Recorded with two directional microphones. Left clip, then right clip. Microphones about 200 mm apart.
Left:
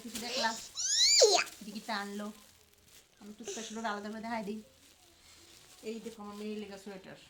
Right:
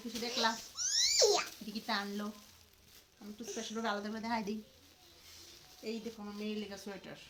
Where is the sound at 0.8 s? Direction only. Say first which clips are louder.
Left 5 dB; 50° left (ahead or behind).